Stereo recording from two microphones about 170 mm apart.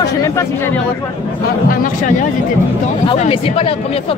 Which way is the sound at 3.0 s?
35° left (ahead or behind).